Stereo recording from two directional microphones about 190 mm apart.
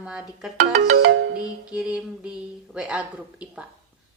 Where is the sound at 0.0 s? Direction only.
5° right (ahead or behind).